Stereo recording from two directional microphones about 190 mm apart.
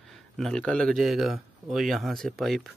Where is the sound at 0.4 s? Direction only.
5° left (ahead or behind).